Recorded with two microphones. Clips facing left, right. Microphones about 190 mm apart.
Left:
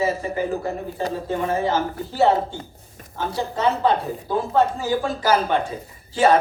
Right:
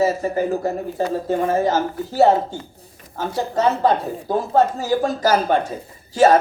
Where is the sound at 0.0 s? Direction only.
45° right (ahead or behind).